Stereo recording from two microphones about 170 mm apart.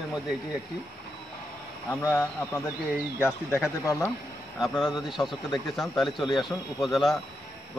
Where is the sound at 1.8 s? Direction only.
10° left (ahead or behind).